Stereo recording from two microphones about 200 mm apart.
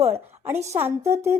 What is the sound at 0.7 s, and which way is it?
Speech, 15° right (ahead or behind).